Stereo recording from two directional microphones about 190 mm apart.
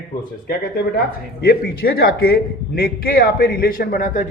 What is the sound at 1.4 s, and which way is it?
A man's voice, 55° left (ahead or behind).